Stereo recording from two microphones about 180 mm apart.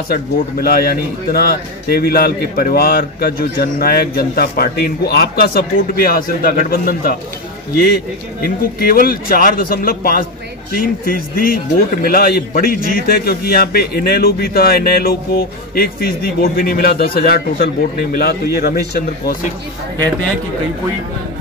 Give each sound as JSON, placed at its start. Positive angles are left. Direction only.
{"t": 0.1, "sound": "a man's voice", "side_deg": 55}
{"t": 8.4, "sound": "a man's voice", "side_deg": 55}